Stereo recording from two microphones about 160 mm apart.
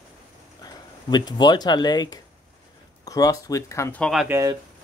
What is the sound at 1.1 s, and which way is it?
Speech, 25° left (ahead or behind).